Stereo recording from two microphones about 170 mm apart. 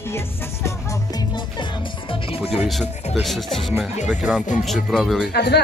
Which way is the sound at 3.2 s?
Centre (ahead or behind).